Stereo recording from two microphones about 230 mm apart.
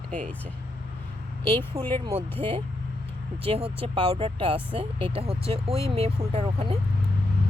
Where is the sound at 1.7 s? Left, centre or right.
Right.